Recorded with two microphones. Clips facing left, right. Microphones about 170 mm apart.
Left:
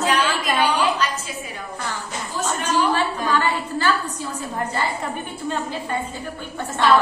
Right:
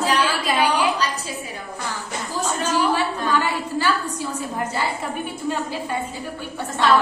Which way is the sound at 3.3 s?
10° right (ahead or behind).